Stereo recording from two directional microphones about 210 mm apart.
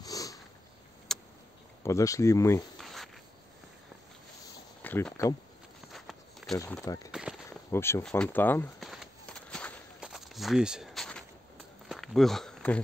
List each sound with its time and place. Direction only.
0.0 s sniff: 15° left (ahead or behind)
1.1 s vehicle: centre (ahead or behind)
1.8 s speech: 15° left (ahead or behind)
2.8 s insect: centre (ahead or behind)
4.8 s speech: 10° left (ahead or behind)
5.9 s walk: centre (ahead or behind)
6.6 s speech: 15° left (ahead or behind)
7.1 s a sound: 5° right (ahead or behind)
7.7 s a sound: 10° left (ahead or behind)